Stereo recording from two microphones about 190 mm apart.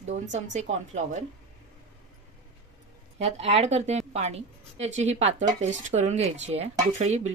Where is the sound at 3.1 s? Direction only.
35° right (ahead or behind).